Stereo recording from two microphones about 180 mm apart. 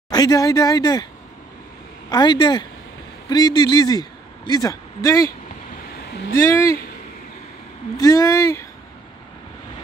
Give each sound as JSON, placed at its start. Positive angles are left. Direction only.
{"t": 0.1, "sound": "speech", "side_deg": 20}
{"t": 2.0, "sound": "a man's voice", "side_deg": 25}
{"t": 6.3, "sound": "speech", "side_deg": 15}
{"t": 8.0, "sound": "speech", "side_deg": 20}